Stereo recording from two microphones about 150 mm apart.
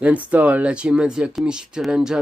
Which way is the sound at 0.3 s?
10° right (ahead or behind).